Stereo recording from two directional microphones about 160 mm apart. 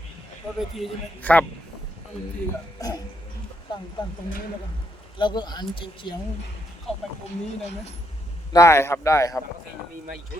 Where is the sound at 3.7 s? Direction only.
30° left (ahead or behind).